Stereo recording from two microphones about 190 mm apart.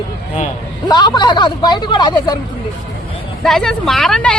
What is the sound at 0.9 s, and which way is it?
Speech, 25° left (ahead or behind).